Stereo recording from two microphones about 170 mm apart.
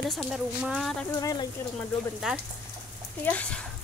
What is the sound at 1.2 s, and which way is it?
Speech, 20° left (ahead or behind).